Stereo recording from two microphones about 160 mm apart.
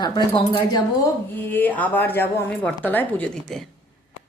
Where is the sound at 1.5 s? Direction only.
10° left (ahead or behind).